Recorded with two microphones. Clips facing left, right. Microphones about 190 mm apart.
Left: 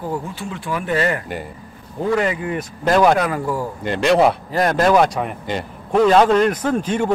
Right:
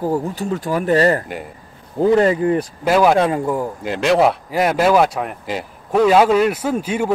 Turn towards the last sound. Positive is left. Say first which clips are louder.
# left 1 dB
turn(degrees=-10)  # may be behind; listen again after turning